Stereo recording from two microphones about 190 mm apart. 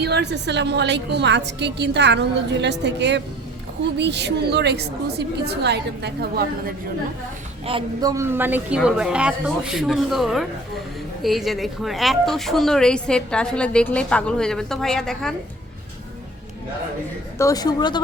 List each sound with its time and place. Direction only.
0.0 s a woman's voice: 60° right (ahead or behind)
7.6 s speech: 30° right (ahead or behind)
8.1 s a woman's voice: 15° right (ahead or behind); by 15.4 s centre (ahead or behind)
17.3 s a woman's voice: 15° left (ahead or behind)